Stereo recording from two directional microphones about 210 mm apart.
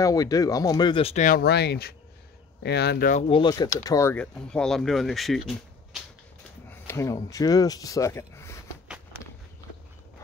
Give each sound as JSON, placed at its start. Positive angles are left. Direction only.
{"t": 0.0, "sound": "speech", "side_deg": 15}
{"t": 6.7, "sound": "a sound", "side_deg": 15}
{"t": 7.2, "sound": "speech", "side_deg": 15}